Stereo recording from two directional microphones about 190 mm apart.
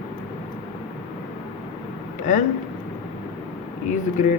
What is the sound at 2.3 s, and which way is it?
Speech, 40° left (ahead or behind).